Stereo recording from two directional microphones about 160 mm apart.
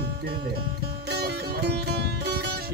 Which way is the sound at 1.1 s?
90° right.